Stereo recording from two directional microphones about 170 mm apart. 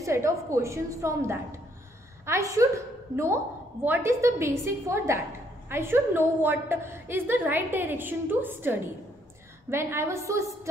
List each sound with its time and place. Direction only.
0.0 s a woman's voice: 15° right (ahead or behind)
3.8 s a woman's voice: 15° right (ahead or behind)